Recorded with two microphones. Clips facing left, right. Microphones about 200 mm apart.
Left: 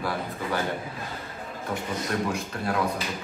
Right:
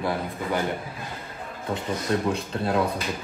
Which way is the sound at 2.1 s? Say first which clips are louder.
Right 4 dB; 25° right (ahead or behind).